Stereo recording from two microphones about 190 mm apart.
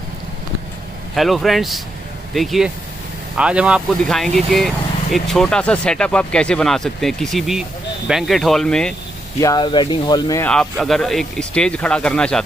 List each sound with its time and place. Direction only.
1.1 s speech: centre (ahead or behind)
9.4 s speech: 20° left (ahead or behind)
10.4 s speech: 5° left (ahead or behind)